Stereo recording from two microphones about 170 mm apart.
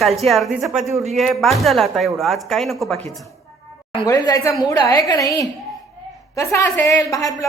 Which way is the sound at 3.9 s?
25° left (ahead or behind).